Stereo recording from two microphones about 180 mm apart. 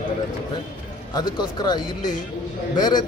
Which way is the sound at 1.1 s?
25° left (ahead or behind).